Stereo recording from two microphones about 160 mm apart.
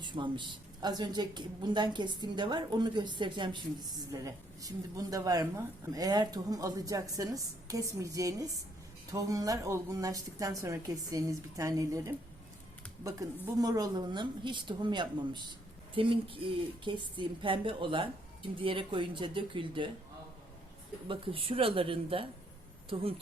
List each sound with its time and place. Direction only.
0.0 s a woman's voice: 30° right (ahead or behind)
21.1 s a woman's voice: 35° right (ahead or behind)